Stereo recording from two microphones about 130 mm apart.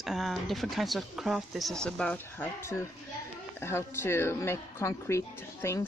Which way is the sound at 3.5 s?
20° left (ahead or behind).